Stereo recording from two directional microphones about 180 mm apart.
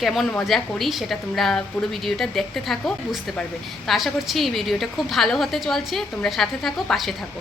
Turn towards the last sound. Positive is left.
turn(degrees=0)  # may be behind; listen again after turning